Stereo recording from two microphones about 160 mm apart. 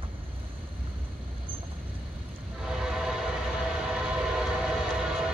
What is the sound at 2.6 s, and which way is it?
Train, 5° right (ahead or behind).